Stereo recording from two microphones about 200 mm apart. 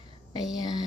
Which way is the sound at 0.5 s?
20° left (ahead or behind).